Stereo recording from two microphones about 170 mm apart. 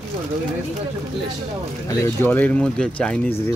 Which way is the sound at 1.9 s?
15° left (ahead or behind).